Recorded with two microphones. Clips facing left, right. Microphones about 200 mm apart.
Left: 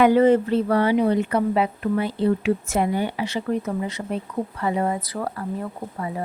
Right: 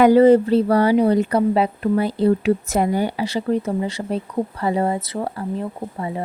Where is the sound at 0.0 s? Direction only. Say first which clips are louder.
Right 4 dB; 35° right (ahead or behind).